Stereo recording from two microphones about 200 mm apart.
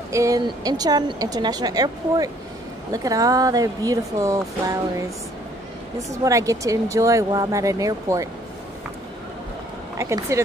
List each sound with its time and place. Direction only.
0.1 s speech: 15° right (ahead or behind)
5.9 s speech: 15° right (ahead or behind)
9.9 s speech: 15° right (ahead or behind)